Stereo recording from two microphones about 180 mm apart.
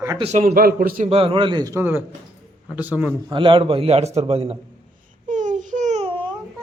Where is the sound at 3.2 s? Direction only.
25° right (ahead or behind).